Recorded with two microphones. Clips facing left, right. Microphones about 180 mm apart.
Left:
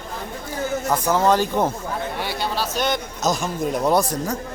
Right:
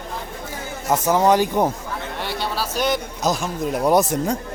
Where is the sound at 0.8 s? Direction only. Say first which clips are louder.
Right 3 dB; 20° right (ahead or behind).